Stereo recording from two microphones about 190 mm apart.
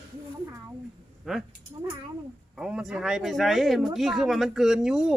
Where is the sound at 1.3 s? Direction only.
Centre (ahead or behind).